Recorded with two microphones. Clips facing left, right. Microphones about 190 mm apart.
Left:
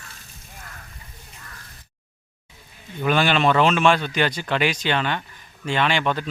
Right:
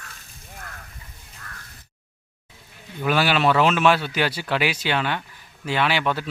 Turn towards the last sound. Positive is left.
turn(degrees=-5)  # may be behind; listen again after turning